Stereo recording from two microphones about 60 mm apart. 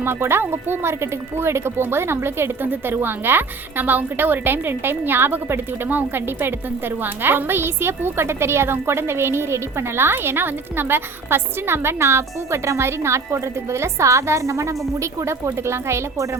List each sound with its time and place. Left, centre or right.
0.0 s a woman's voice: right